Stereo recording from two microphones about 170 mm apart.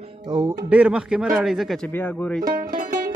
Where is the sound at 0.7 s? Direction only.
10° right (ahead or behind).